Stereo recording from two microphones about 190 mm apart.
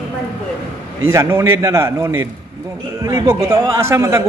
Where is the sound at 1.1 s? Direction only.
15° right (ahead or behind).